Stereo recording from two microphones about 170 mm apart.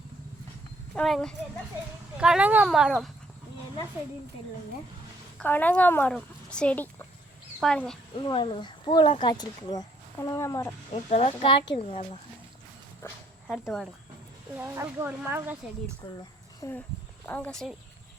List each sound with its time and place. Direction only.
0.9 s speech: centre (ahead or behind)
5.4 s speech: 10° left (ahead or behind)
8.2 s speech: 30° left (ahead or behind)
10.9 s speech: 35° left (ahead or behind)
13.0 s speech: 15° left (ahead or behind)
14.6 s speech: 15° right (ahead or behind)
16.0 s speech: 25° left (ahead or behind)
16.6 s speech: 15° left (ahead or behind)